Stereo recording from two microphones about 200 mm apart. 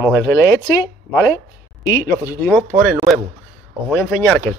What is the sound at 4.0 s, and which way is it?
Speech, 10° left (ahead or behind).